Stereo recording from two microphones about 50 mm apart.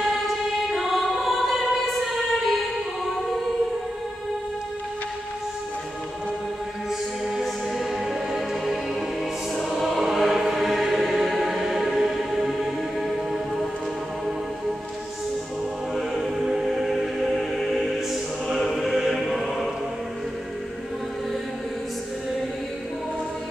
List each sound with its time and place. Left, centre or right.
0.7 s choir: centre
7.2 s music: centre
15.9 s music: centre
18.5 s choir: centre